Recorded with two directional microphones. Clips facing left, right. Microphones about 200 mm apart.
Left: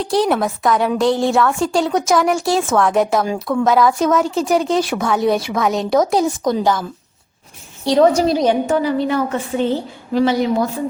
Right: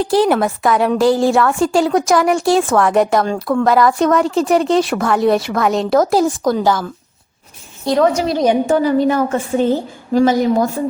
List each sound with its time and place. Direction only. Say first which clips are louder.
0.0 s a woman's voice: right 3 dB; centre (ahead or behind)
7.9 s a woman's voice: left 2 dB; 35° left (ahead or behind)
8.6 s a woman's voice: right 4 dB; 40° right (ahead or behind)